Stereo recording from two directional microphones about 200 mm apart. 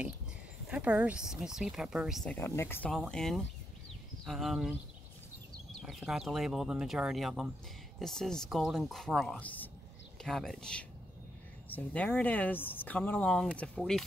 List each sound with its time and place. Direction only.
0.7 s speech: 5° right (ahead or behind)
2.3 s speech: 15° left (ahead or behind); by 4.7 s 5° right (ahead or behind)
5.8 s speech: centre (ahead or behind)